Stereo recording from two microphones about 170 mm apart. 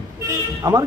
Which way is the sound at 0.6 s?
20° right (ahead or behind).